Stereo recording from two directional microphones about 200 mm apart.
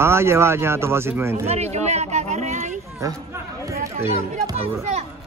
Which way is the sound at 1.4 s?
35° right (ahead or behind).